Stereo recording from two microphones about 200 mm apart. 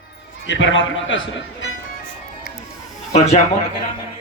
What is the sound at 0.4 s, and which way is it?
Speech, 70° left (ahead or behind).